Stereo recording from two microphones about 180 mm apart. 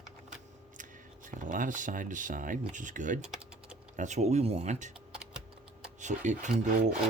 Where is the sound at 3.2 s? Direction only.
5° right (ahead or behind).